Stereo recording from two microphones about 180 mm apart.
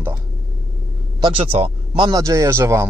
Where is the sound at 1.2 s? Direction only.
30° right (ahead or behind); by 2.9 s 15° right (ahead or behind).